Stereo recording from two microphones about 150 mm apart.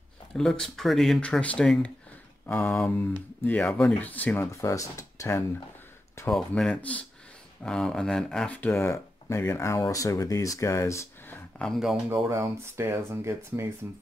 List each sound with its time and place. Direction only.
0.4 s speech: 5° left (ahead or behind); by 5.4 s 20° left (ahead or behind)
6.3 s speech: 5° left (ahead or behind)
11.5 s speech: 5° left (ahead or behind)
12.1 s speech: 20° right (ahead or behind)